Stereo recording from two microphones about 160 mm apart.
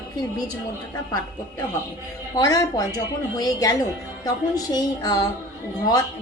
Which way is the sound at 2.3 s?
25° left (ahead or behind).